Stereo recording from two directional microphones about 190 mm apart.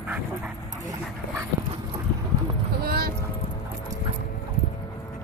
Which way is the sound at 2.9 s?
50° right (ahead or behind).